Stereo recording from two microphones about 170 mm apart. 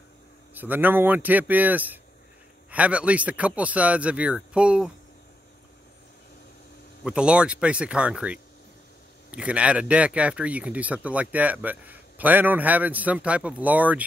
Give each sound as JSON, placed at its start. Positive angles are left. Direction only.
{"t": 0.6, "sound": "speech", "side_deg": -10}
{"t": 7.0, "sound": "speech", "side_deg": -5}